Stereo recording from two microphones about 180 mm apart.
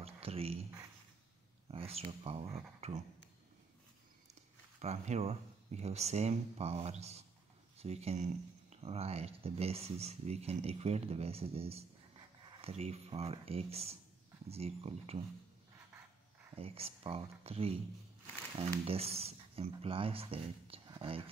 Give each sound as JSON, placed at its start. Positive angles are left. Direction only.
{"t": 0.0, "sound": "a sound", "side_deg": -35}
{"t": 1.7, "sound": "speech", "side_deg": -35}
{"t": 2.8, "sound": "a sound", "side_deg": -35}
{"t": 4.7, "sound": "speech", "side_deg": -40}
{"t": 16.5, "sound": "speech", "side_deg": -35}
{"t": 18.9, "sound": "speech", "side_deg": -35}